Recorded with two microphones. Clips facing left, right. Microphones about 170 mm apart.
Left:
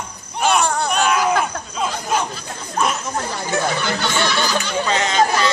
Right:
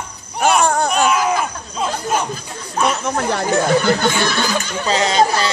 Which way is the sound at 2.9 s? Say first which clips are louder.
Right 5 dB; 70° right (ahead or behind).